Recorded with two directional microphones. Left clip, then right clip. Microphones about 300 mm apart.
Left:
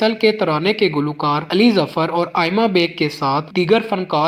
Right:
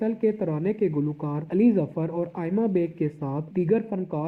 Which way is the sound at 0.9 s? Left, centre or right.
Left.